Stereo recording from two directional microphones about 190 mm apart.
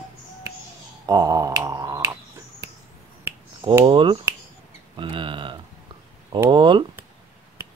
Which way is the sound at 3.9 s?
25° right (ahead or behind).